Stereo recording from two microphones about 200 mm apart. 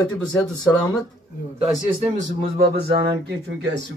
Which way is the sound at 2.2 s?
50° right (ahead or behind).